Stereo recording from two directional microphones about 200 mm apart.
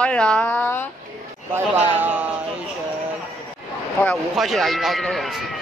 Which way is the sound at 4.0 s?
Centre (ahead or behind).